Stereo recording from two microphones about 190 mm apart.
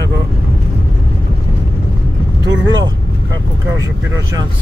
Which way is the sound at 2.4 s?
20° right (ahead or behind).